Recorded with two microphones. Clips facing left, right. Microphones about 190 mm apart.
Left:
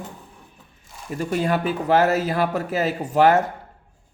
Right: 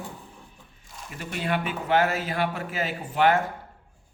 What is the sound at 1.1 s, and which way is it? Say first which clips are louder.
Speech: left 7 dB; 40° left (ahead or behind).